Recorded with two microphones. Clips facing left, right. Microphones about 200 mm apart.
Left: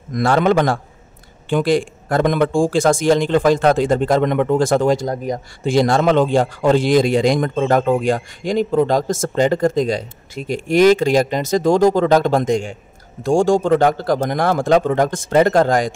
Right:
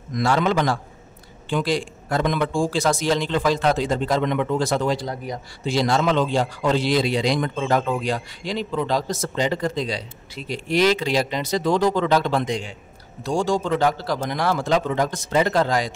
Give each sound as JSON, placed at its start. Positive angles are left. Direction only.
{"t": 0.1, "sound": "speech", "side_deg": 55}